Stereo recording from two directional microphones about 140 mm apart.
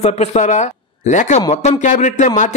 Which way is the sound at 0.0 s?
50° left (ahead or behind).